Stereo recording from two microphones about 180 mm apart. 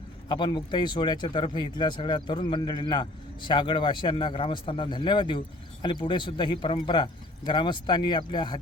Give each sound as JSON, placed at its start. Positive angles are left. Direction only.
{"t": 0.3, "sound": "speech", "side_deg": 25}